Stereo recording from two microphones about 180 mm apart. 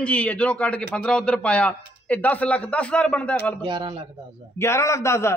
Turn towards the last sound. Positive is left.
turn(degrees=15)  # may be behind; listen again after turning